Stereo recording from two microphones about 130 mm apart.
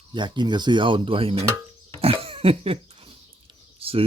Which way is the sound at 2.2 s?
45° right (ahead or behind).